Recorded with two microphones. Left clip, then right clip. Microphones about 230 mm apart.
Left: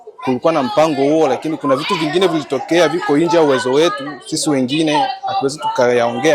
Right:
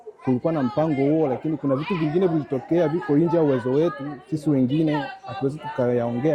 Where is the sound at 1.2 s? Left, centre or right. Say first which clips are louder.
Left 8 dB; centre.